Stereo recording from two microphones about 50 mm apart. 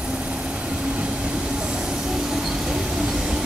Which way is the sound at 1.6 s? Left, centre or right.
Centre.